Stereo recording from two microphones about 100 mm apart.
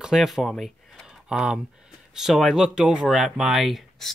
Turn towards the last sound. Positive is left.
turn(degrees=0)  # may be behind; listen again after turning